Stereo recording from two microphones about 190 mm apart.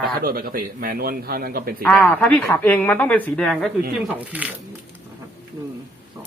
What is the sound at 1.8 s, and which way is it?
Speech, 10° left (ahead or behind).